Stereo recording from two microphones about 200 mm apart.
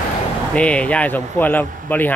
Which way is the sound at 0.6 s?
5° left (ahead or behind).